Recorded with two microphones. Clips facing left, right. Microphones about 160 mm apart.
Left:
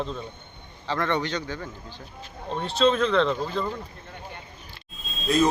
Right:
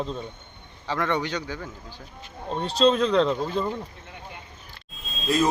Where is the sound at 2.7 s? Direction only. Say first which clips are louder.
Right 1 dB; 35° right (ahead or behind).